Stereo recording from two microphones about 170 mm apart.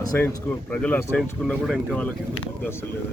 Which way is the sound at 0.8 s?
10° left (ahead or behind).